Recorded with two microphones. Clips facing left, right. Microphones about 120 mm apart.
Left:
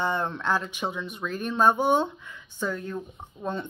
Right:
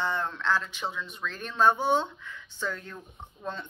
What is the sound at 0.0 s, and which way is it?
Speech, 15° left (ahead or behind).